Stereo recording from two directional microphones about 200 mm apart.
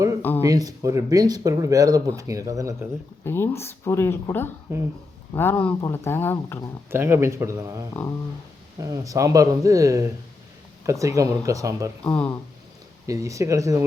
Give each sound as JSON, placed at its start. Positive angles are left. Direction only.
{"t": 0.2, "sound": "speech", "side_deg": 10}
{"t": 0.4, "sound": "speech", "side_deg": -15}
{"t": 3.2, "sound": "speech", "side_deg": 10}
{"t": 6.9, "sound": "speech", "side_deg": -10}
{"t": 12.0, "sound": "speech", "side_deg": 5}
{"t": 13.1, "sound": "speech", "side_deg": -15}